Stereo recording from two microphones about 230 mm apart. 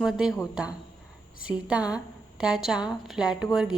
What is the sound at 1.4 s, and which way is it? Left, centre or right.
A woman's voice, centre.